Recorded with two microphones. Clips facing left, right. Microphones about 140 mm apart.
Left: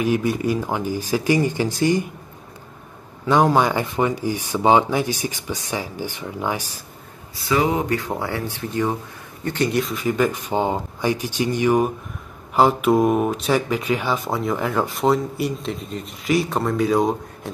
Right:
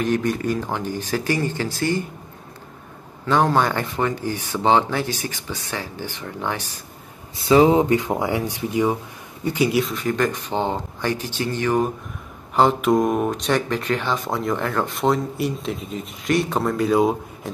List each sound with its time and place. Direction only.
0.0 s speech: 10° left (ahead or behind)
3.3 s speech: 10° left (ahead or behind)
7.3 s speech: 25° right (ahead or behind); by 17.5 s centre (ahead or behind)